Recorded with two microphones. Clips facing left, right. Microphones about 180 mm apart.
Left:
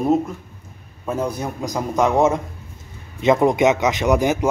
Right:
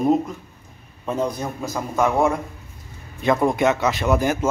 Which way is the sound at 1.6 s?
15° left (ahead or behind).